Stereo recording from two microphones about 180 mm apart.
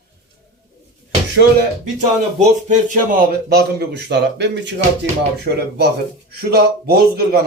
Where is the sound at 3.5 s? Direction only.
65° right (ahead or behind).